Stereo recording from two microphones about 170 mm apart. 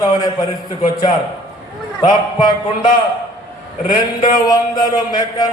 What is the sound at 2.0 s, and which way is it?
Speech, 25° left (ahead or behind).